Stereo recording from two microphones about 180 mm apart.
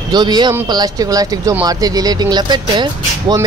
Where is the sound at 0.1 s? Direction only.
25° right (ahead or behind).